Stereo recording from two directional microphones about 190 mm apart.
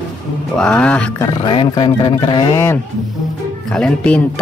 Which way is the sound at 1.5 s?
25° left (ahead or behind).